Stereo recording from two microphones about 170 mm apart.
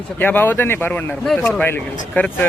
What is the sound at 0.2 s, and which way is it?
Speech, 10° left (ahead or behind).